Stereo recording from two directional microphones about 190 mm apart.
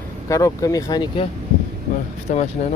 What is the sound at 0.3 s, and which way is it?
Speech, 15° left (ahead or behind).